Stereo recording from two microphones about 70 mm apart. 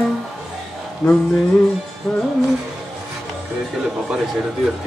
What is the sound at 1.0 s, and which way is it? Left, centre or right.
Music, centre.